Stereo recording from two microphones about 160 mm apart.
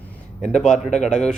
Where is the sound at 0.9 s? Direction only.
45° left (ahead or behind).